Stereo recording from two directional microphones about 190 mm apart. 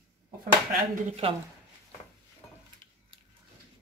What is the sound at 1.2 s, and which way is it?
Speech, 30° right (ahead or behind).